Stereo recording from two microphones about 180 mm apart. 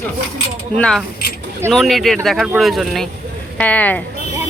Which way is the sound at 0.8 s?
5° left (ahead or behind).